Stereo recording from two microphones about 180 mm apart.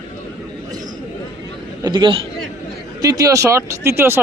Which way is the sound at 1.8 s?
25° right (ahead or behind).